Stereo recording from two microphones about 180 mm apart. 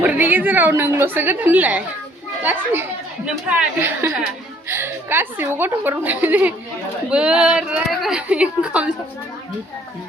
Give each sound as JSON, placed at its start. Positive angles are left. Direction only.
{"t": 0.0, "sound": "a woman's voice", "side_deg": -10}